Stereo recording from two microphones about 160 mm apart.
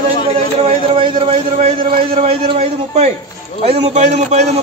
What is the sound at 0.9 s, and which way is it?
A man's voice, 30° right (ahead or behind).